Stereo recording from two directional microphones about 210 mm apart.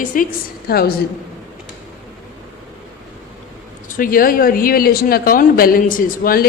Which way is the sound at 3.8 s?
40° left (ahead or behind).